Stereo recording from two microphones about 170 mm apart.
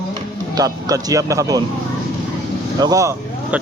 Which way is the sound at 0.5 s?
20° right (ahead or behind).